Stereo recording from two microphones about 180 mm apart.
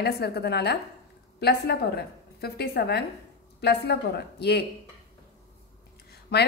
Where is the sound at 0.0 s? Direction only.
60° left (ahead or behind).